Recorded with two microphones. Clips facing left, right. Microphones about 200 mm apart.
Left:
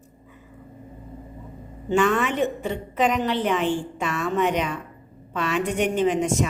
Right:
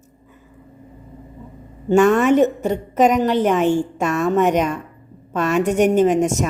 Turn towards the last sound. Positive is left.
turn(degrees=-45)  # may be behind; listen again after turning